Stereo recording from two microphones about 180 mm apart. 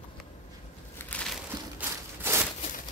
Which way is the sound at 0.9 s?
5° left (ahead or behind).